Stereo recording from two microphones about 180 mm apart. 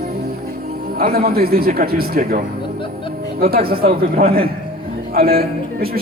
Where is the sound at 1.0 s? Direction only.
55° right (ahead or behind).